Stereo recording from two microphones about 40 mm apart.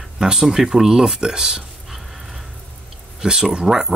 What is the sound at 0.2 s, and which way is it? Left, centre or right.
Speech, centre.